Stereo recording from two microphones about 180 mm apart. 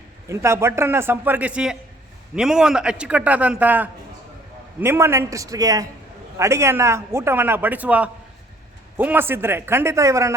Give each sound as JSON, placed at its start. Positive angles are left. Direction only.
{"t": 0.3, "sound": "a man's voice", "side_deg": -15}